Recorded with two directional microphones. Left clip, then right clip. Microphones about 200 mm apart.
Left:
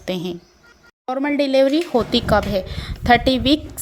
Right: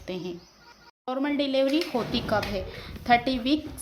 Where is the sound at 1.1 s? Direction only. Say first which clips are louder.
Left 8 dB; 25° left (ahead or behind).